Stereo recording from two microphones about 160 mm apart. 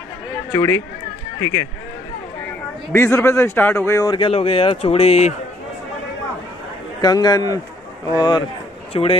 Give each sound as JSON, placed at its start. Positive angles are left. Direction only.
{"t": 0.5, "sound": "speech", "side_deg": 15}
{"t": 2.9, "sound": "speech", "side_deg": 15}
{"t": 7.0, "sound": "speech", "side_deg": 25}